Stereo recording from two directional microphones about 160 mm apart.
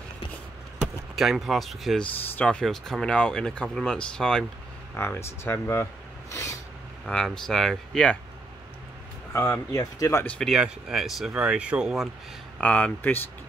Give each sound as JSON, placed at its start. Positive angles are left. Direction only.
{"t": 1.1, "sound": "speech", "side_deg": 0}
{"t": 4.9, "sound": "speech", "side_deg": 15}
{"t": 7.1, "sound": "speech", "side_deg": 5}
{"t": 9.3, "sound": "speech", "side_deg": 15}
{"t": 10.2, "sound": "speech", "side_deg": 5}
{"t": 12.5, "sound": "speech", "side_deg": 10}